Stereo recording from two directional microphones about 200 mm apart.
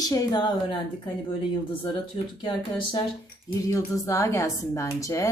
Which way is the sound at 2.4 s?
25° left (ahead or behind).